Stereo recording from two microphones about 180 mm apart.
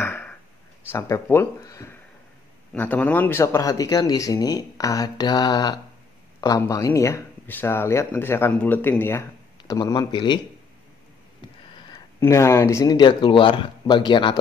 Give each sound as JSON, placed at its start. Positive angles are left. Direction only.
{"t": 0.0, "sound": "a sound", "side_deg": 10}
{"t": 0.8, "sound": "speech", "side_deg": 15}
{"t": 12.2, "sound": "speech", "side_deg": 15}